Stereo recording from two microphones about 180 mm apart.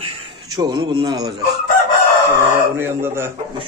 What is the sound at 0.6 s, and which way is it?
Speech, 25° right (ahead or behind).